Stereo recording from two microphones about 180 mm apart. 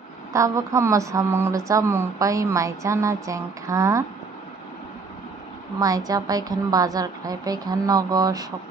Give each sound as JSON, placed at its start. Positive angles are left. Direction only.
{"t": 0.3, "sound": "speech", "side_deg": -15}
{"t": 5.8, "sound": "a woman's voice", "side_deg": -20}